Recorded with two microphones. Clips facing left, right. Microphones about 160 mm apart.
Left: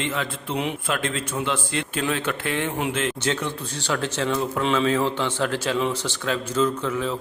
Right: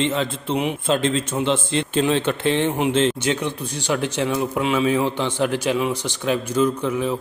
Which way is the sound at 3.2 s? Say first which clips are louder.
Right 3 dB; 15° right (ahead or behind).